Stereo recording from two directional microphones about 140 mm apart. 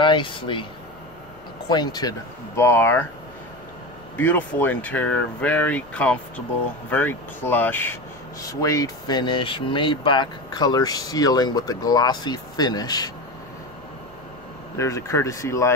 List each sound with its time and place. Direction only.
0.0 s speech: 35° left (ahead or behind)
1.7 s speech: 30° left (ahead or behind)
4.2 s speech: 10° left (ahead or behind); by 13.1 s 30° left (ahead or behind)
14.8 s speech: 20° left (ahead or behind)